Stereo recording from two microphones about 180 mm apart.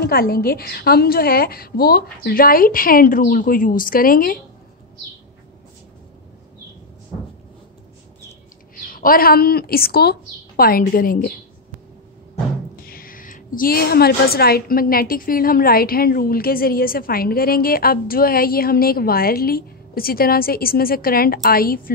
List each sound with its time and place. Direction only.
0.0 s a woman's voice: 55° left (ahead or behind)
8.7 s a woman's voice: 50° left (ahead or behind)
12.7 s a woman's voice: 55° left (ahead or behind)